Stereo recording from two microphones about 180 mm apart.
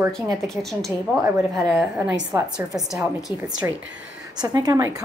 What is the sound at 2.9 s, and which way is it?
Speech, centre (ahead or behind).